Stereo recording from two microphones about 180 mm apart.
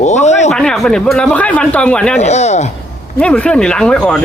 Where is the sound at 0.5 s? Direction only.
5° left (ahead or behind).